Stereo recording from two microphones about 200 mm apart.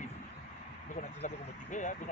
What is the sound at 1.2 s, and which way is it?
Speech, 40° left (ahead or behind).